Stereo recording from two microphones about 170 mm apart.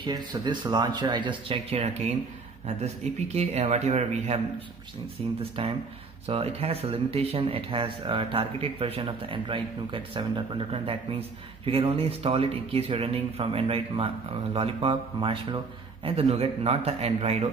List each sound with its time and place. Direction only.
0.0 s speech: 25° right (ahead or behind)
5.4 s speech: 35° right (ahead or behind)